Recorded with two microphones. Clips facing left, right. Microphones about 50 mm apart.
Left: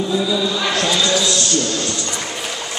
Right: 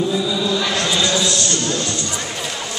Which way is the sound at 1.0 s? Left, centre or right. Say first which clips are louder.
Left 1 dB; right.